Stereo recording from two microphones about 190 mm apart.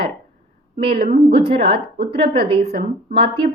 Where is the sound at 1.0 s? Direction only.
50° right (ahead or behind).